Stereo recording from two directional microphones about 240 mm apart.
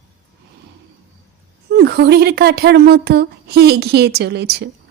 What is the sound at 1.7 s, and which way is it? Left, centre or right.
Speech, right.